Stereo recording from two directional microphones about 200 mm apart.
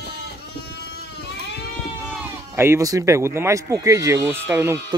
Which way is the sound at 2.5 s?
15° right (ahead or behind).